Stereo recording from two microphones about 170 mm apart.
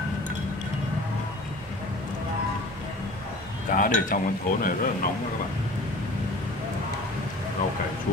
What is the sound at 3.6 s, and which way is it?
Speech, 50° left (ahead or behind).